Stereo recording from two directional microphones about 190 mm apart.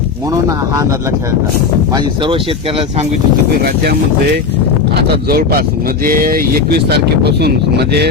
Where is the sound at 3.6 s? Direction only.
55° right (ahead or behind).